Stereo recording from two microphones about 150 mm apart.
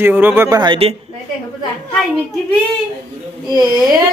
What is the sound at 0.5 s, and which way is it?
Speech, 30° right (ahead or behind).